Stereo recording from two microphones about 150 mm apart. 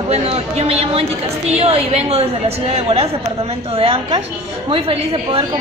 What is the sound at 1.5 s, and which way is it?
A woman's voice, 45° right (ahead or behind).